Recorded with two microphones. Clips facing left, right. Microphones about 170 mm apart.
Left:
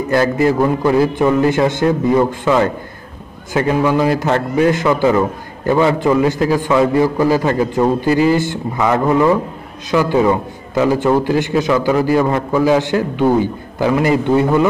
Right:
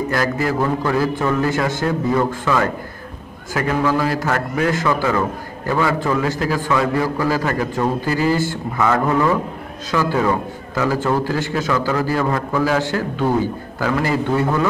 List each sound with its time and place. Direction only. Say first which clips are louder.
0.1 s a man's voice: left 10 dB; 25° left (ahead or behind)